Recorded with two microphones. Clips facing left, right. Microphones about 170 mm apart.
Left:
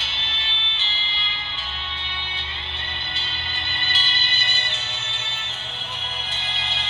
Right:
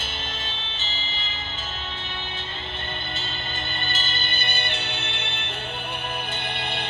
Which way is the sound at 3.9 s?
45° right (ahead or behind).